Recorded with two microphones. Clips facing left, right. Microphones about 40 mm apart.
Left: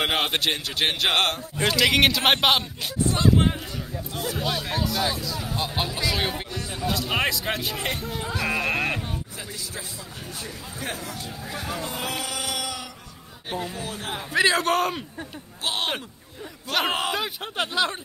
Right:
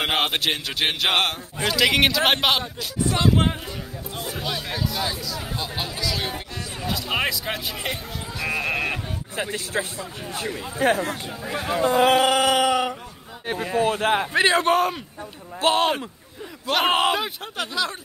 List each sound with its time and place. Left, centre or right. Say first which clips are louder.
0.0 s a man's voice: right 1 dB; centre
3.1 s speech: right 1 dB; right
4.4 s a man's voice: left 1 dB; centre
5.1 s speech: even; centre
5.9 s speech: left 1 dB; left
6.9 s a man's voice: even; centre
9.4 s speech: right 9 dB; right
14.3 s a man's voice: left 3 dB; right
14.7 s a man's voice: right 3 dB; centre
15.6 s speech: right 8 dB; right
17.6 s speech: left 2 dB; left